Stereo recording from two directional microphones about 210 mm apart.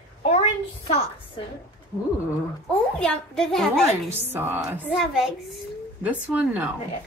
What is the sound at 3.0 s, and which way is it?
Speech, centre (ahead or behind).